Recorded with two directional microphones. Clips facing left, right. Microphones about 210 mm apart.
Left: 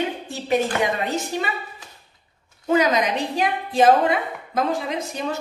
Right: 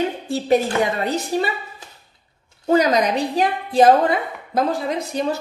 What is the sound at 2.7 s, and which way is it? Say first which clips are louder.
Speech: right 3 dB; 35° right (ahead or behind).